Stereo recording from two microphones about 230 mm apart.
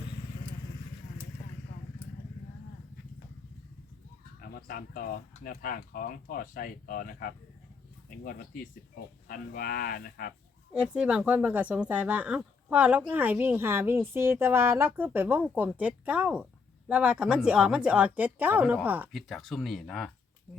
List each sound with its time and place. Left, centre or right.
4.4 s speech: left
10.8 s speech: centre